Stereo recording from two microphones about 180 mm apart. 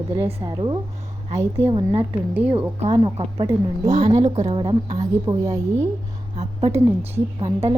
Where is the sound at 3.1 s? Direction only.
35° right (ahead or behind).